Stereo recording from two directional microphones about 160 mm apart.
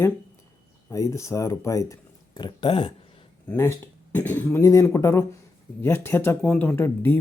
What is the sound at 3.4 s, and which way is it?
Speech, 15° left (ahead or behind).